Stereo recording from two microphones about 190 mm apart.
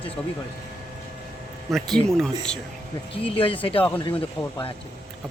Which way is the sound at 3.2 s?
30° left (ahead or behind).